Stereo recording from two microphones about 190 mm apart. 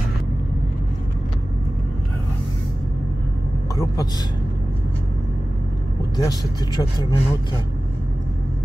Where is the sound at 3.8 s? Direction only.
20° left (ahead or behind).